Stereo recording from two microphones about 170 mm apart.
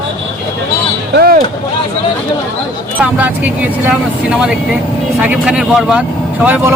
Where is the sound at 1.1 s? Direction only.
65° right (ahead or behind).